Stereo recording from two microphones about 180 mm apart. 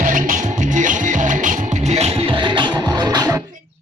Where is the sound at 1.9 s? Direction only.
30° right (ahead or behind).